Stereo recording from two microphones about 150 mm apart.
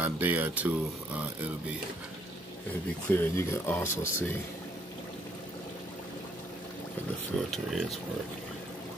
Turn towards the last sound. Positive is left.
turn(degrees=0)  # may be behind; listen again after turning